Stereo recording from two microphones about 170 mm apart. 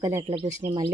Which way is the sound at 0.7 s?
25° right (ahead or behind).